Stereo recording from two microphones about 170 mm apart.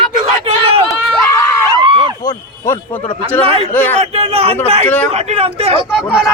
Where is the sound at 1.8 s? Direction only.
30° right (ahead or behind).